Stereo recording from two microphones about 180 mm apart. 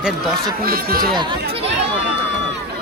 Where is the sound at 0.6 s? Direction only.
55° right (ahead or behind).